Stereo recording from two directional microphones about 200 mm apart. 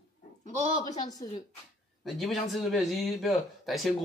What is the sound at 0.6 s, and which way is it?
Speech, 30° right (ahead or behind).